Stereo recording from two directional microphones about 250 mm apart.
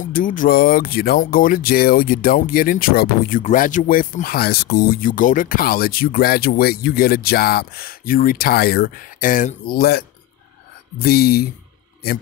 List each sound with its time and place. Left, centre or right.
0.0 s speech: left